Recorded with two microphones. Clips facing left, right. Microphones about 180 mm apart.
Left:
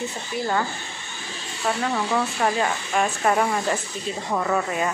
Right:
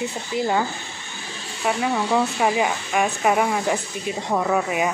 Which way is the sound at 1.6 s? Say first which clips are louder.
Right 2 dB; 10° right (ahead or behind).